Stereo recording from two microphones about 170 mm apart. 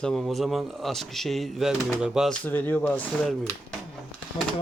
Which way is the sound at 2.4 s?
10° left (ahead or behind).